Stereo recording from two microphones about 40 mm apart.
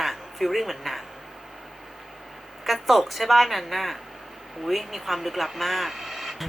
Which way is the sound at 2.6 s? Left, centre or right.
Centre.